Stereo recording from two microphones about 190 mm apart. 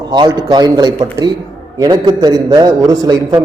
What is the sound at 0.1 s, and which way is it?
A man's voice, 20° right (ahead or behind).